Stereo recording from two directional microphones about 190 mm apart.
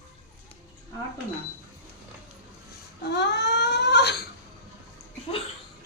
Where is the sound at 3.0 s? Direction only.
65° left (ahead or behind).